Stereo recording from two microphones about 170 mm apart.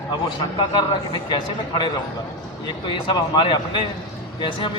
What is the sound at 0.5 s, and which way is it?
A man's voice, 25° left (ahead or behind).